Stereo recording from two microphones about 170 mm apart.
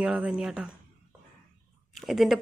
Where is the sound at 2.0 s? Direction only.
Centre (ahead or behind).